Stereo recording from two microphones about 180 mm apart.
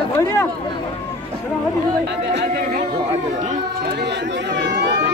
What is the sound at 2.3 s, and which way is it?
Speech, 55° right (ahead or behind).